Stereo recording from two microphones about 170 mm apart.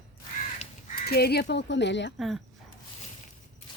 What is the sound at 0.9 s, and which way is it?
Speech, 65° left (ahead or behind).